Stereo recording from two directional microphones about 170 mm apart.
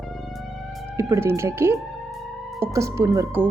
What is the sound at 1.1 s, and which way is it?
Speech, 15° right (ahead or behind).